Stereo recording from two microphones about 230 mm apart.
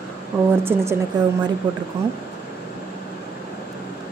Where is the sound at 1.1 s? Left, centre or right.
Centre.